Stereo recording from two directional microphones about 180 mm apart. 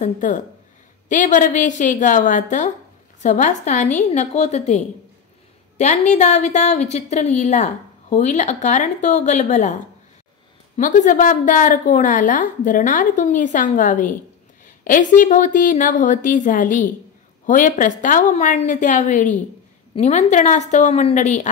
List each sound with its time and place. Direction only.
0.0 s a woman's voice: 45° left (ahead or behind)
10.8 s a woman's voice: 45° left (ahead or behind)